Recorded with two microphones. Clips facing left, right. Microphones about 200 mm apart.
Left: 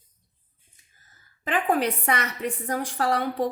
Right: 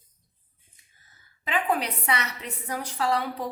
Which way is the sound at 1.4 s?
50° left (ahead or behind).